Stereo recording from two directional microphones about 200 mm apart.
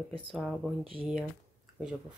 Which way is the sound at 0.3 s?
Centre (ahead or behind).